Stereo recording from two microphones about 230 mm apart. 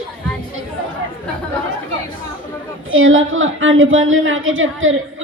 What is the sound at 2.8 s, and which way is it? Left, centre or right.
A woman's voice, right.